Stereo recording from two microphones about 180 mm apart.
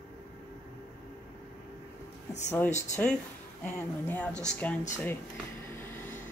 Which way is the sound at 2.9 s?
10° left (ahead or behind).